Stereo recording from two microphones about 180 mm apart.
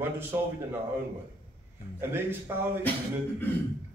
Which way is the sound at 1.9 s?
15° right (ahead or behind).